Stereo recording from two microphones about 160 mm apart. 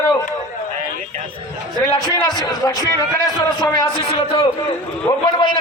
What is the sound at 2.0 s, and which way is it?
A man's voice, 25° left (ahead or behind).